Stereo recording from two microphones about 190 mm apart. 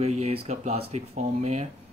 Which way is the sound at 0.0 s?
35° right (ahead or behind).